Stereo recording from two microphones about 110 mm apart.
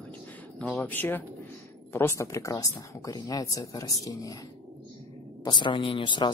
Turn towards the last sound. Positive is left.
turn(degrees=50)  # may be behind; listen again after turning